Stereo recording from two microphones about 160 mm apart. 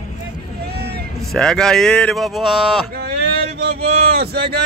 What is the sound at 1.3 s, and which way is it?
Speech, 5° left (ahead or behind).